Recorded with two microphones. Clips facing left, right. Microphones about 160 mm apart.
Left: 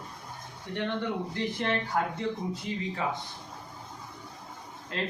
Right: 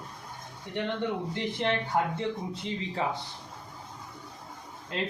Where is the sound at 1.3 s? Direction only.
20° right (ahead or behind).